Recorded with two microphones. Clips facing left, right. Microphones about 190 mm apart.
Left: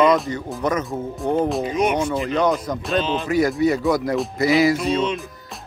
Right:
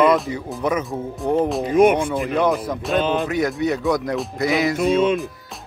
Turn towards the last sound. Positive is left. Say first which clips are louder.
# right 4 dB
turn(degrees=-55)  # may be behind; listen again after turning